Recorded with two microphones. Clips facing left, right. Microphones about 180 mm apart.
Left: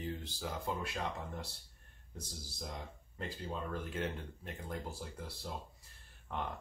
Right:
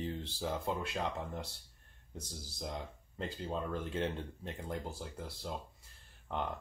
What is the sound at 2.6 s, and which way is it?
Speech, 25° right (ahead or behind).